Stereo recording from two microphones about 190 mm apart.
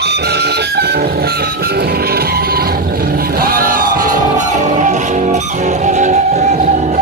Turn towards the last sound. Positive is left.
turn(degrees=-40)  # may be behind; listen again after turning